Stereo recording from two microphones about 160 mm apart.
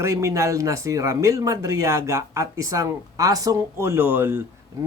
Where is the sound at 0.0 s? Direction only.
20° right (ahead or behind).